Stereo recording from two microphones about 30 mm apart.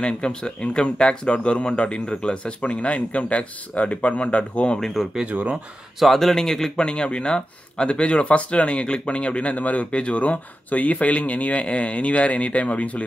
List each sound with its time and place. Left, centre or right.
0.0 s speech: left
5.0 s speech: centre
6.3 s speech: centre
6.8 s speech: left
9.8 s speech: left
11.6 s speech: left